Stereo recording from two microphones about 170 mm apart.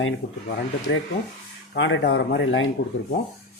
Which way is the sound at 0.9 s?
75° left (ahead or behind).